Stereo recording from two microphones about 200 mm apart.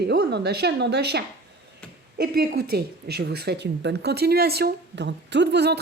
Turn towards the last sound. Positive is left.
turn(degrees=-55)  # may be behind; listen again after turning